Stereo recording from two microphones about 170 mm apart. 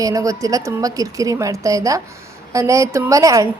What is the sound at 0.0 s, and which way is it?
A woman's voice, 20° right (ahead or behind).